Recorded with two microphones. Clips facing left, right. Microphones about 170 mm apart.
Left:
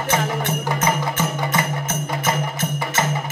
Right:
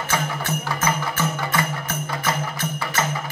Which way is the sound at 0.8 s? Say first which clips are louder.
Left 2 dB; 20° left (ahead or behind).